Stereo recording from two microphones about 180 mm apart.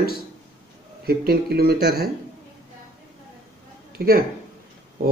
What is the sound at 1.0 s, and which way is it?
A man's voice, 60° right (ahead or behind).